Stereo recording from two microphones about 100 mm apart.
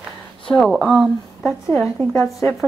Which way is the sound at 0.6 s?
Centre (ahead or behind).